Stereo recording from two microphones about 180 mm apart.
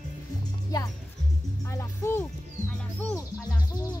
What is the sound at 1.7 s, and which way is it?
Music, 15° left (ahead or behind).